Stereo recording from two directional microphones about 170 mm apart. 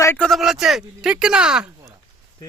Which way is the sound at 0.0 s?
15° left (ahead or behind).